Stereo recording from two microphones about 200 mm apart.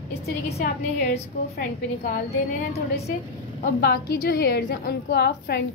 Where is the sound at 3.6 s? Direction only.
55° left (ahead or behind).